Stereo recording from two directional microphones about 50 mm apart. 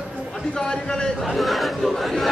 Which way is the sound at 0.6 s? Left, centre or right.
Centre.